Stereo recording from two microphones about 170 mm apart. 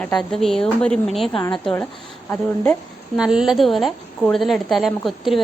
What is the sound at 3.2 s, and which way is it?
Speech, 5° right (ahead or behind).